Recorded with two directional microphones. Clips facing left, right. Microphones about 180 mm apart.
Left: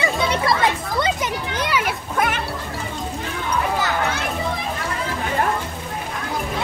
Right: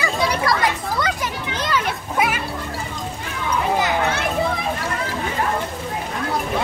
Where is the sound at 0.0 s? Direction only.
25° left (ahead or behind).